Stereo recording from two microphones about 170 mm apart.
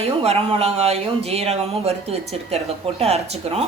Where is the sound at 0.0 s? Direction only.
35° right (ahead or behind).